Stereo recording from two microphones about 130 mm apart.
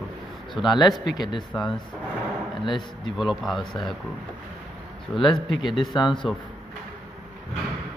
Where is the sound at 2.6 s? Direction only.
40° left (ahead or behind).